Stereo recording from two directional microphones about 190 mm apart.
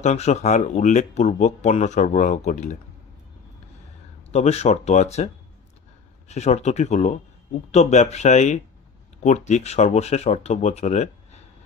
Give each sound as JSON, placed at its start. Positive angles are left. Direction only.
{"t": 0.0, "sound": "speech", "side_deg": 35}
{"t": 4.3, "sound": "speech", "side_deg": 35}